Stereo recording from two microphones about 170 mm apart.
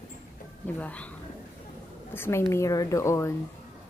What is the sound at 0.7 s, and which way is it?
Speech, 10° left (ahead or behind).